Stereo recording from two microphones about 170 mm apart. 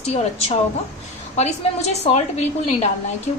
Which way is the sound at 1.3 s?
40° left (ahead or behind).